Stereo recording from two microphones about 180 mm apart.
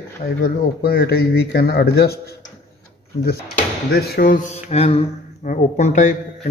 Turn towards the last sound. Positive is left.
turn(degrees=45)  # may be behind; listen again after turning